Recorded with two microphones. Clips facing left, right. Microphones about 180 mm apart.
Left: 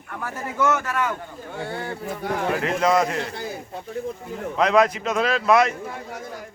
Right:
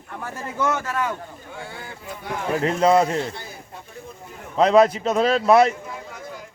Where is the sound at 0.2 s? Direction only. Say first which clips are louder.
Left 2 dB; 25° right (ahead or behind).